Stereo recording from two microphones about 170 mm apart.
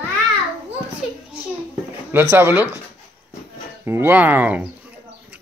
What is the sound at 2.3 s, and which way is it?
Speech, 10° right (ahead or behind).